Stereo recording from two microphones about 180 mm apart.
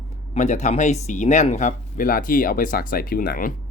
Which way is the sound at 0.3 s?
40° left (ahead or behind).